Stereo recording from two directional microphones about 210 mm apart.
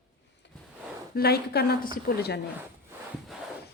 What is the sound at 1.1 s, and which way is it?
Speech, 50° left (ahead or behind).